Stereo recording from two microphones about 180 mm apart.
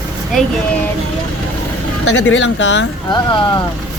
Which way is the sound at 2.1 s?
90° left.